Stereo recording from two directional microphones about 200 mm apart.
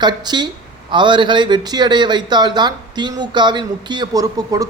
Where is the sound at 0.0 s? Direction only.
20° right (ahead or behind).